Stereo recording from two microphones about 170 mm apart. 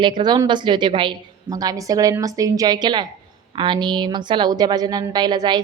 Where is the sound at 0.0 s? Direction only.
25° right (ahead or behind).